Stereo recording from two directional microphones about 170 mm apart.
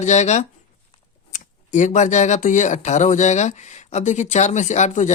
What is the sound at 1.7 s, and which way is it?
Speech, 45° left (ahead or behind).